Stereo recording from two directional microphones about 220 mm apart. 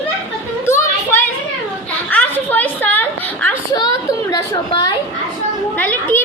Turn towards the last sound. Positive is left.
turn(degrees=10)  # may be behind; listen again after turning